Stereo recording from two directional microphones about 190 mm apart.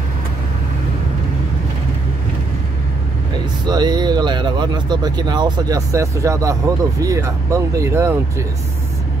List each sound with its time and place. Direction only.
3.6 s speech: 20° right (ahead or behind)